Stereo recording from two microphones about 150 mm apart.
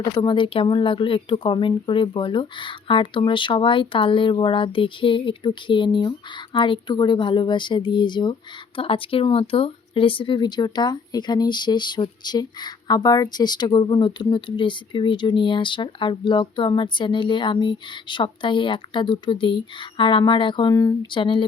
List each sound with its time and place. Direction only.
0.0 s speech: 30° left (ahead or behind)